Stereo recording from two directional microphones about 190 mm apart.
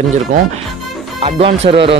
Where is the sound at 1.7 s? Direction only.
30° right (ahead or behind).